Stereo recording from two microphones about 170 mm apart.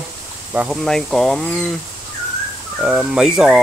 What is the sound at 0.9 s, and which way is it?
Speech, 5° left (ahead or behind).